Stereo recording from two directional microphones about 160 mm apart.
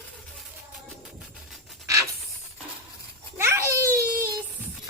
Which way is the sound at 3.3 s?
15° right (ahead or behind).